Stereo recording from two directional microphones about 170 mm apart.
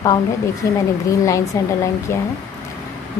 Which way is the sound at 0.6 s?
15° left (ahead or behind).